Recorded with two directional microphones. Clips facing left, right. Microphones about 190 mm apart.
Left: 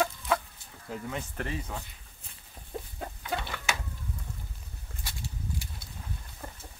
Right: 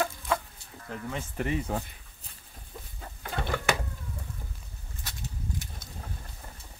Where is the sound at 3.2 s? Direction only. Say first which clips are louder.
Right 5 dB; 50° right (ahead or behind).